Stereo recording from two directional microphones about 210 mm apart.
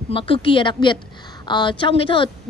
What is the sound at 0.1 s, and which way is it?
A woman's voice, 25° left (ahead or behind).